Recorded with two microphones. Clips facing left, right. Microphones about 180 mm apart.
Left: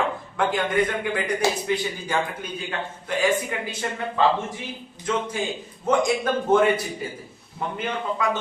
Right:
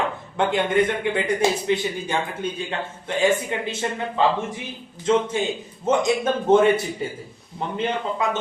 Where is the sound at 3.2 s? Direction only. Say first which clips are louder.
Right 3 dB; 25° right (ahead or behind).